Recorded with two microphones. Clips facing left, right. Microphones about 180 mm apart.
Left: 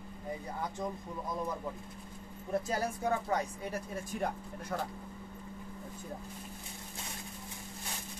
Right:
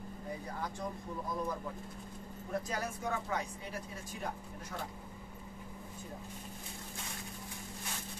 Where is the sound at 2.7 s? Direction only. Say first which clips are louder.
Left 6 dB; 35° left (ahead or behind).